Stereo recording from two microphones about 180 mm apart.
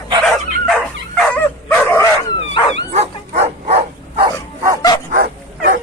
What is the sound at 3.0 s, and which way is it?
Bow-wow, 35° right (ahead or behind).